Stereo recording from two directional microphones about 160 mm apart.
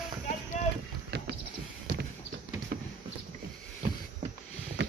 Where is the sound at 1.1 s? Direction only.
90° right.